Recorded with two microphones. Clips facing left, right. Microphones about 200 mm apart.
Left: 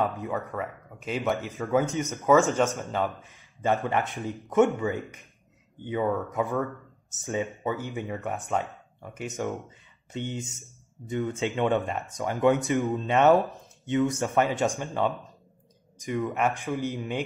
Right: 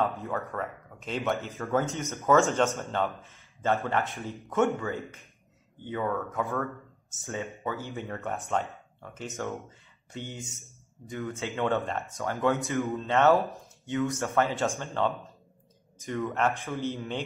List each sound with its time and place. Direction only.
0.0 s a man's voice: 15° left (ahead or behind)
0.6 s speech: 5° left (ahead or behind)
1.4 s a man's voice: 15° left (ahead or behind)
13.4 s speech: centre (ahead or behind)
14.1 s a man's voice: 15° left (ahead or behind)